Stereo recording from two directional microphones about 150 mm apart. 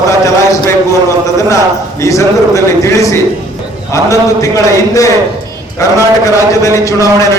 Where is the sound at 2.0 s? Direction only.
20° left (ahead or behind).